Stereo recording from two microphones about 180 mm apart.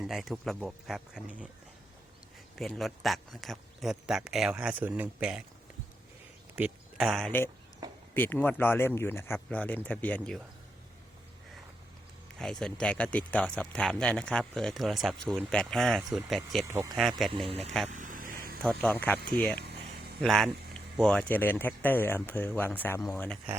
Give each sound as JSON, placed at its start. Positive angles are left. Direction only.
{"t": 0.0, "sound": "speech", "side_deg": 0}
{"t": 2.6, "sound": "speech", "side_deg": 0}
{"t": 6.6, "sound": "speech", "side_deg": 0}
{"t": 12.4, "sound": "speech", "side_deg": 5}
{"t": 16.6, "sound": "speech", "side_deg": -20}
{"t": 17.0, "sound": "speech", "side_deg": 0}
{"t": 17.3, "sound": "speech", "side_deg": -30}
{"t": 17.8, "sound": "a sound", "side_deg": -45}
{"t": 18.6, "sound": "speech", "side_deg": 5}